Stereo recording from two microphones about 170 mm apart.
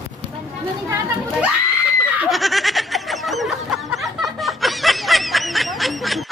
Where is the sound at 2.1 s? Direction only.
Centre (ahead or behind).